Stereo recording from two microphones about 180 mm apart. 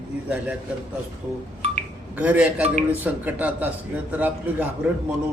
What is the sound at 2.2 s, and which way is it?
A man's voice, 5° right (ahead or behind).